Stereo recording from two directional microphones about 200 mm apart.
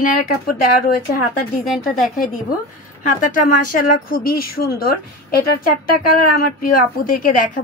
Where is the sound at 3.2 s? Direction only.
40° left (ahead or behind).